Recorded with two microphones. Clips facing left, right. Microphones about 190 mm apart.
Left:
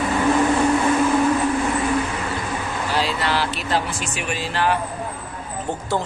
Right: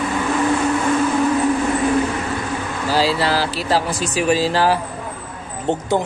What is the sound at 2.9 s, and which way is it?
Speech, 35° right (ahead or behind).